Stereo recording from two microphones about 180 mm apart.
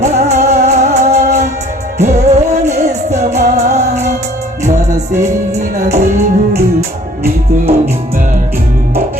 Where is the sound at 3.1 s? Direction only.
40° right (ahead or behind).